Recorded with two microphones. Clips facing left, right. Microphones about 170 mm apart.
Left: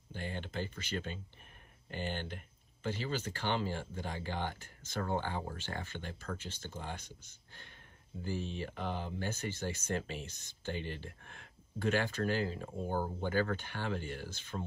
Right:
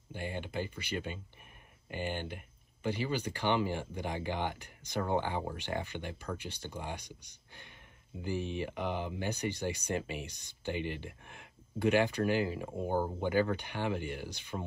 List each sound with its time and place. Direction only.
0.1 s speech: 15° right (ahead or behind)